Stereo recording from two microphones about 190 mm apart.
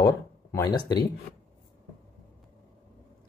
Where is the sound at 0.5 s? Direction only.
20° left (ahead or behind).